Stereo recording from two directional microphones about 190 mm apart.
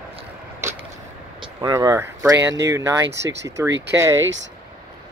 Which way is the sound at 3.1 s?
70° right (ahead or behind).